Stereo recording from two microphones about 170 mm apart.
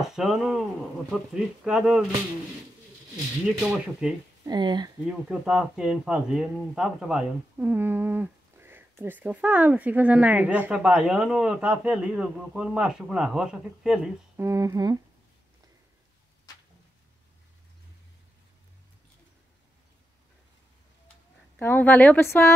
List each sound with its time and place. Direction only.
0.0 s speech: centre (ahead or behind)
3.6 s speech: 5° right (ahead or behind)
4.5 s speech: 25° right (ahead or behind)
5.0 s speech: 5° right (ahead or behind)
7.6 s a sound: 10° right (ahead or behind)
9.0 s speech: 10° right (ahead or behind)
14.3 s speech: 15° right (ahead or behind)
21.5 s a woman's voice: 10° left (ahead or behind)